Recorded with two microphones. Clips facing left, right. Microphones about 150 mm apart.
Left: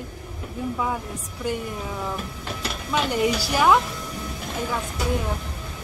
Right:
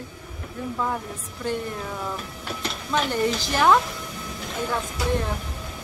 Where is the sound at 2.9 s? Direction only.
15° left (ahead or behind).